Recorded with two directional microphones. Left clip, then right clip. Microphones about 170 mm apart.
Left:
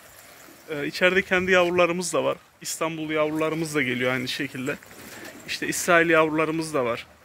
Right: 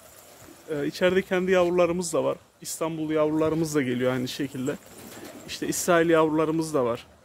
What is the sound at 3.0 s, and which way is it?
Speech, 25° right (ahead or behind).